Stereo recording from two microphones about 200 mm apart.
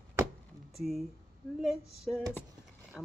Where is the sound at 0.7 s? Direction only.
Centre (ahead or behind).